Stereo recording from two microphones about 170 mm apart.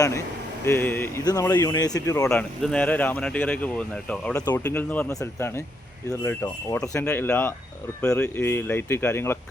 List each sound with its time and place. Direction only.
0.6 s speech: 10° left (ahead or behind)
2.3 s speech: 5° left (ahead or behind)